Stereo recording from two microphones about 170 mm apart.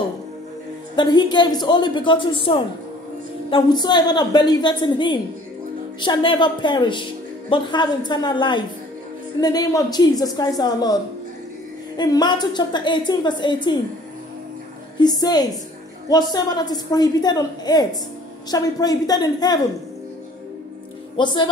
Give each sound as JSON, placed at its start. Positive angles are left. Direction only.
{"t": 0.9, "sound": "a woman's voice", "side_deg": 25}
{"t": 12.0, "sound": "a woman's voice", "side_deg": 25}
{"t": 15.0, "sound": "a woman's voice", "side_deg": 25}
{"t": 21.2, "sound": "a woman's voice", "side_deg": 25}